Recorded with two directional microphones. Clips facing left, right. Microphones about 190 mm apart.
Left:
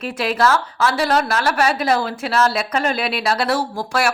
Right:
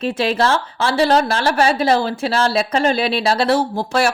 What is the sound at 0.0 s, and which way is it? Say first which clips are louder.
A woman's voice: right 1 dB; 25° right (ahead or behind).